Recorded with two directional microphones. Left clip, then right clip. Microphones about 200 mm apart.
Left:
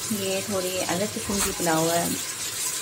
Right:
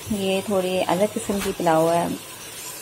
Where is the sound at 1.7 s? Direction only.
10° right (ahead or behind).